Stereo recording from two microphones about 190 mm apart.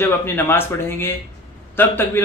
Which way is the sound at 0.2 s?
10° left (ahead or behind).